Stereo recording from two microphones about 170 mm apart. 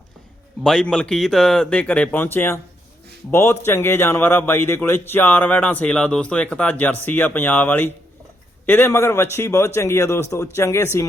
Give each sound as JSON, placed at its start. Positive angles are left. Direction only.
{"t": 0.6, "sound": "a man's voice", "side_deg": 5}